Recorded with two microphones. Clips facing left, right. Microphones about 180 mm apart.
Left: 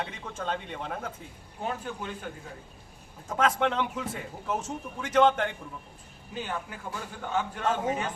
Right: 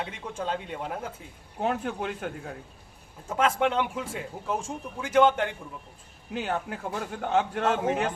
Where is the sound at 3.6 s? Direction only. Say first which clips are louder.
Right 2 dB; 5° right (ahead or behind).